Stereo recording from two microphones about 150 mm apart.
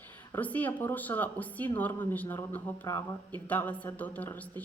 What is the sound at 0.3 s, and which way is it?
A woman's voice, 10° left (ahead or behind).